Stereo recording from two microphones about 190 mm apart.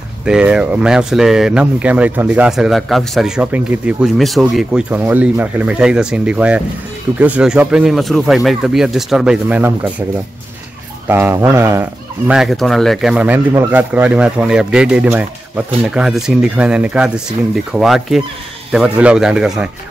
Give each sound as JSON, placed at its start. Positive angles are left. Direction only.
{"t": 0.2, "sound": "speech", "side_deg": -5}
{"t": 11.1, "sound": "speech", "side_deg": -10}
{"t": 12.3, "sound": "speech", "side_deg": 0}